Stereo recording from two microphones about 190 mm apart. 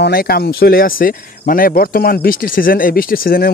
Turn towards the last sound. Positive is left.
turn(degrees=50)  # may be behind; listen again after turning